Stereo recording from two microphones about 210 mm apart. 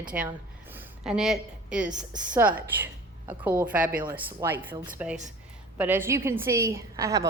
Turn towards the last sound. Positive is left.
turn(degrees=-15)  # may be behind; listen again after turning